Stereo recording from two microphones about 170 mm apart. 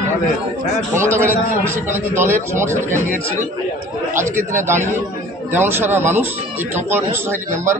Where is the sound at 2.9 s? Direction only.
50° right (ahead or behind).